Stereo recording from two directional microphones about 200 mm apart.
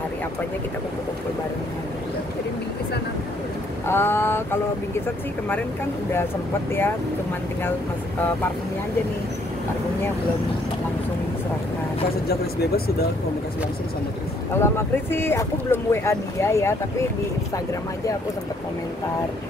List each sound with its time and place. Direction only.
3.8 s speech: 10° left (ahead or behind)
12.3 s speech: 50° left (ahead or behind)
14.5 s speech: 10° left (ahead or behind)